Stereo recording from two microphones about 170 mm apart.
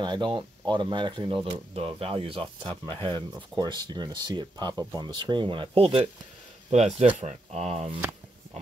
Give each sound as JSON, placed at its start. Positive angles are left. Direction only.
{"t": 0.0, "sound": "speech", "side_deg": -25}